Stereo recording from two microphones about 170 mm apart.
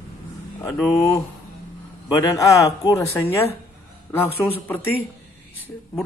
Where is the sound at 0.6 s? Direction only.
15° left (ahead or behind).